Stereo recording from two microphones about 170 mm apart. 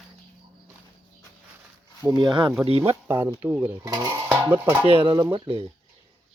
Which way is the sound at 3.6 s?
25° right (ahead or behind).